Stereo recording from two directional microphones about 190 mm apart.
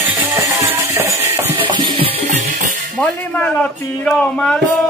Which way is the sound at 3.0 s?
5° left (ahead or behind).